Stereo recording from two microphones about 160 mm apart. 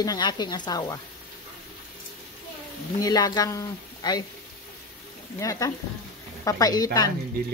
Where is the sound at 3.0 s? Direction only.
25° left (ahead or behind).